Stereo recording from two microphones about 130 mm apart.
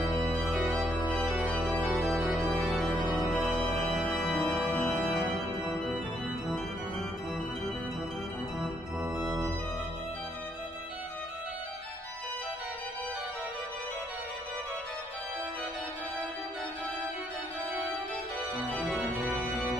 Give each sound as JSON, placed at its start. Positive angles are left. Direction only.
{"t": 0.2, "sound": "organ", "side_deg": -15}
{"t": 0.5, "sound": "organ", "side_deg": 0}
{"t": 2.4, "sound": "music", "side_deg": 10}
{"t": 3.6, "sound": "organ", "side_deg": 10}
{"t": 8.5, "sound": "organ", "side_deg": 0}
{"t": 18.7, "sound": "organ", "side_deg": 5}
{"t": 19.0, "sound": "organ", "side_deg": -10}